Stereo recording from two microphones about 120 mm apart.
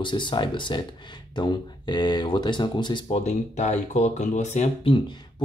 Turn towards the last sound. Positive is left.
turn(degrees=45)  # may be behind; listen again after turning